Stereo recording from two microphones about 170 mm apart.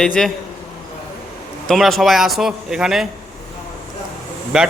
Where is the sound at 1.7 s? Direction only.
Centre (ahead or behind).